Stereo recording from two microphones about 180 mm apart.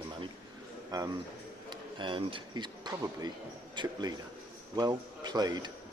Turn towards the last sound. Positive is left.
turn(degrees=-20)  # may be behind; listen again after turning